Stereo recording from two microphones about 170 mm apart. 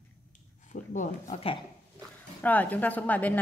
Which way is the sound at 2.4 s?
10° left (ahead or behind).